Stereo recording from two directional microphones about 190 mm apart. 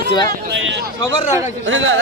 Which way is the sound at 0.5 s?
70° right (ahead or behind).